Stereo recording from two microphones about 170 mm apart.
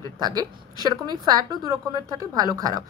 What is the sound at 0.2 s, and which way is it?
A woman's voice, 20° right (ahead or behind).